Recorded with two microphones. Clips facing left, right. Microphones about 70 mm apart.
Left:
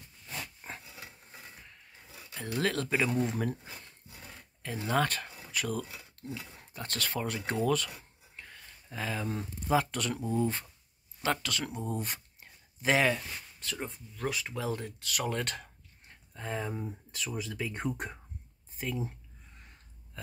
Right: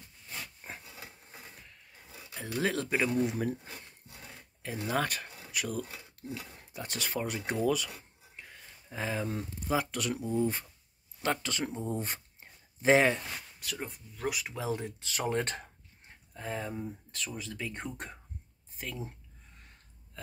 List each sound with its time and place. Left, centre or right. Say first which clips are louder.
0.7 s dog: left 1 dB; centre
2.4 s speech: even; centre
4.8 s speech: left 2 dB; centre
8.4 s a sound: left 1 dB; centre
8.9 s speech: right 1 dB; centre
9.2 s speech: even; centre
11.4 s speech: right 1 dB; right
11.9 s a sound: right 1 dB; right
13.6 s speech: left 4 dB; centre; by 15.7 s right
16.3 s speech: left 1 dB; centre